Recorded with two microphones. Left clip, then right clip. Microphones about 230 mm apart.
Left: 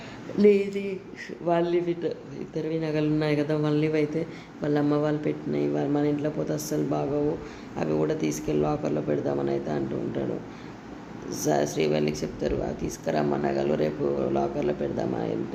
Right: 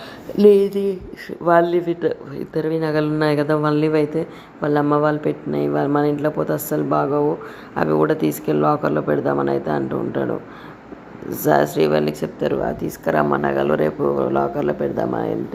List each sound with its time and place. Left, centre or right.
0.3 s speech: right
11.4 s speech: centre